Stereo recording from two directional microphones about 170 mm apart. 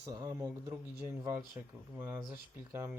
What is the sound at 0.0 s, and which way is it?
Speech, 20° right (ahead or behind).